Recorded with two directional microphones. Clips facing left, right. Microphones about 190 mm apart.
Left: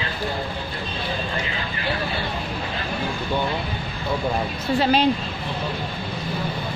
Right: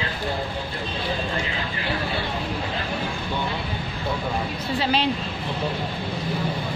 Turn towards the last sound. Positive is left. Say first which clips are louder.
# left 4 dB
turn(degrees=45)  # may be behind; listen again after turning